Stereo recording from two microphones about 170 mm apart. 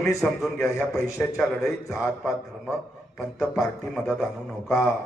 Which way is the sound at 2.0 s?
10° right (ahead or behind).